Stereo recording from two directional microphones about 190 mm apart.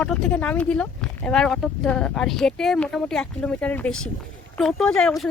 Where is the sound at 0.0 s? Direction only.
5° left (ahead or behind).